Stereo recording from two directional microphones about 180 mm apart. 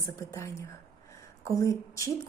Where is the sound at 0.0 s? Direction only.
15° left (ahead or behind).